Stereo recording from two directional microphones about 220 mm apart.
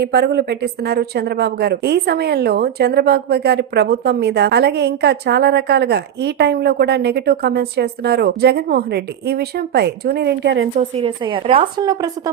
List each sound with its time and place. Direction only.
0.0 s speech: 45° right (ahead or behind)
10.8 s a woman's voice: 25° right (ahead or behind)